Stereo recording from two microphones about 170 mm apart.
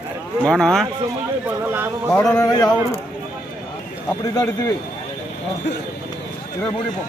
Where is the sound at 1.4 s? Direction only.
10° right (ahead or behind).